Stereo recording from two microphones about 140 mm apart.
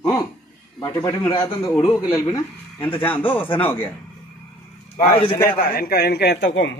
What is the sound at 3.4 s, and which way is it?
Speech, 40° left (ahead or behind).